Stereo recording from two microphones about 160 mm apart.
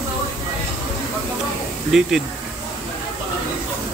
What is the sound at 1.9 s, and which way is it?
Speech, centre (ahead or behind).